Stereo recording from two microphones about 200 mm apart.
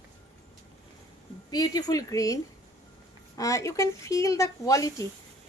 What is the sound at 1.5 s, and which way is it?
A woman's voice, 20° left (ahead or behind).